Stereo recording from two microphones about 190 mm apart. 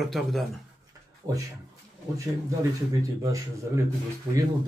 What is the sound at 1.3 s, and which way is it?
Speech, 20° right (ahead or behind).